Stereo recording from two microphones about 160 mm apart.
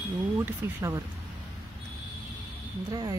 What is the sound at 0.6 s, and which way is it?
Speech, 15° right (ahead or behind).